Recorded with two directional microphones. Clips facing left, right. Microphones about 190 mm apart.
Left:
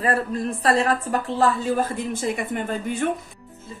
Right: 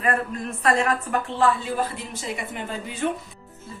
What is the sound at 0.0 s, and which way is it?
A woman's voice, 35° left (ahead or behind).